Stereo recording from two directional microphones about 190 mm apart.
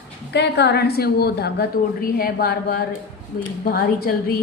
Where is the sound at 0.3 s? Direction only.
65° left (ahead or behind).